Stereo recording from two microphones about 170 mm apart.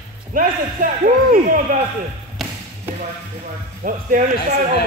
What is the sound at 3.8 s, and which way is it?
Speech, 55° right (ahead or behind).